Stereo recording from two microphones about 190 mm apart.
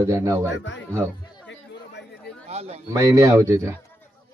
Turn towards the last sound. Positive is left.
turn(degrees=-15)  # may be behind; listen again after turning